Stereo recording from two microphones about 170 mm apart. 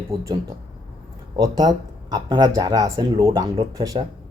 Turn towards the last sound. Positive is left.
turn(degrees=-20)  # may be behind; listen again after turning